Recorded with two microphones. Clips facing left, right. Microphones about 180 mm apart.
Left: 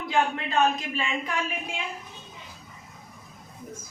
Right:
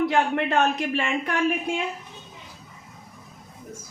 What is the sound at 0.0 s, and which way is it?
A man's voice, 70° right (ahead or behind).